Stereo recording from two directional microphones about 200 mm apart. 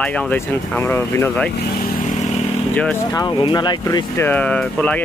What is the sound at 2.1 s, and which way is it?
Motorcycle, 35° left (ahead or behind).